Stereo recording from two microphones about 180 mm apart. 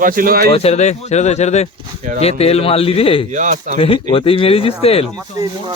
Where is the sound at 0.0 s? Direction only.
50° right (ahead or behind).